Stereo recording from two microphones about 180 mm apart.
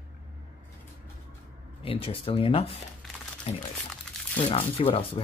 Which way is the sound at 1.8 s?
30° left (ahead or behind).